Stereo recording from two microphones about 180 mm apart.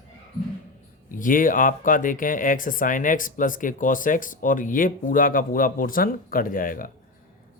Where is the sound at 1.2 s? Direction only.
50° left (ahead or behind).